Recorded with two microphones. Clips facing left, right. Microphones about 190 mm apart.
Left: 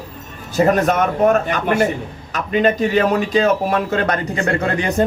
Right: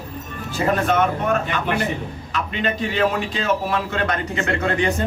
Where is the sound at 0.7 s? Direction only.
40° left (ahead or behind).